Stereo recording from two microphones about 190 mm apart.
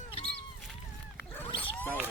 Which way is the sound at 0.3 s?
5° left (ahead or behind).